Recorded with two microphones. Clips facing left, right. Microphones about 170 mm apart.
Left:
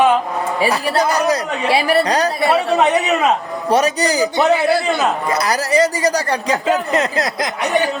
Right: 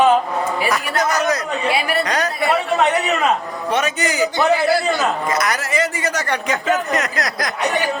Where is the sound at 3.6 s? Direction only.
35° left (ahead or behind).